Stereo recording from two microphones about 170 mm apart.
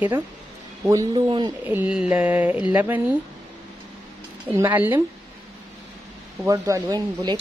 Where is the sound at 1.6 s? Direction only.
10° right (ahead or behind).